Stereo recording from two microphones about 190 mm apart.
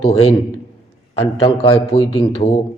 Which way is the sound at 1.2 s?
30° left (ahead or behind).